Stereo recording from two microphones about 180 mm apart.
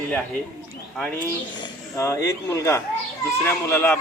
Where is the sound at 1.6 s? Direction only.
15° left (ahead or behind).